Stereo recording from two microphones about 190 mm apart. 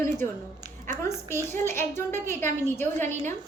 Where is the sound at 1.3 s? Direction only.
15° left (ahead or behind).